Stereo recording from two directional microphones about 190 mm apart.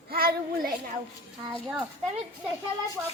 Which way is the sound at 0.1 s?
55° right (ahead or behind).